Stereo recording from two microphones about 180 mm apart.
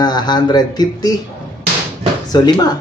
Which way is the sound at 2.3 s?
20° left (ahead or behind).